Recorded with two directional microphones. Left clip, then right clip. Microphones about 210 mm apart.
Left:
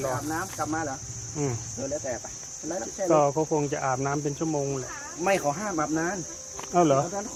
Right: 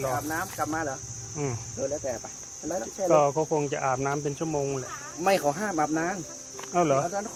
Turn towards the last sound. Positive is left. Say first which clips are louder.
# left 2 dB
turn(degrees=0)  # may be behind; listen again after turning